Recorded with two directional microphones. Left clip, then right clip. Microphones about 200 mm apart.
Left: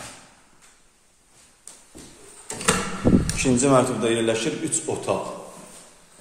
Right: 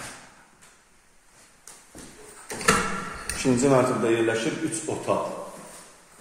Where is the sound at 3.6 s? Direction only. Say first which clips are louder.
Left 1 dB; 25° left (ahead or behind).